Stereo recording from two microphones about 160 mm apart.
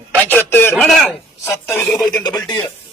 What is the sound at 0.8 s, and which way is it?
Speech, centre (ahead or behind).